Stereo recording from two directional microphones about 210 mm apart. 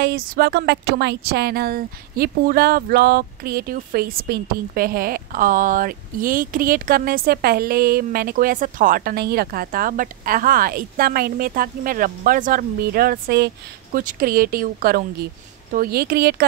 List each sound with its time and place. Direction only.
0.0 s a woman's voice: 50° right (ahead or behind)